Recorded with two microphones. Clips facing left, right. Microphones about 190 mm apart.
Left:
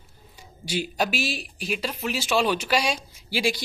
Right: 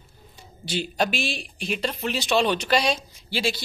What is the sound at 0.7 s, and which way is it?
Speech, 10° left (ahead or behind).